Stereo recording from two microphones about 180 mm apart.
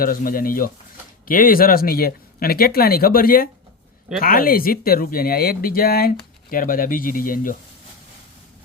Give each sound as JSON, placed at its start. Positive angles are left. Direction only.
{"t": 0.0, "sound": "speech", "side_deg": 55}